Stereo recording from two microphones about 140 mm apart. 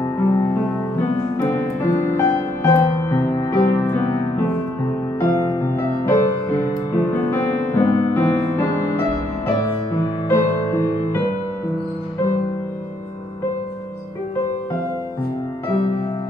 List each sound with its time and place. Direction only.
0.0 s music: 15° left (ahead or behind)
2.1 s music: 15° left (ahead or behind)
10.2 s music: 15° left (ahead or behind)